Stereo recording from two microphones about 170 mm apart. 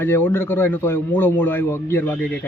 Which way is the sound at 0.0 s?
10° left (ahead or behind).